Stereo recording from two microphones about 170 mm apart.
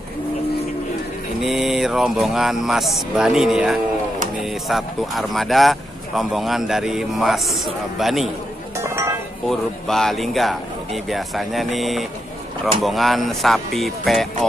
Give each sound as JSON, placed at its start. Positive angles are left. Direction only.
{"t": 1.4, "sound": "speech", "side_deg": 0}
{"t": 8.7, "sound": "chink", "side_deg": -15}
{"t": 9.5, "sound": "speech", "side_deg": 0}